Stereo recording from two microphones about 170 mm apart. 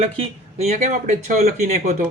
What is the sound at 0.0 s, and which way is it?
Speech, 40° right (ahead or behind).